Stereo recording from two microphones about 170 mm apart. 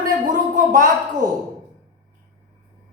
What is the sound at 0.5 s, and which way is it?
Speech, 45° right (ahead or behind).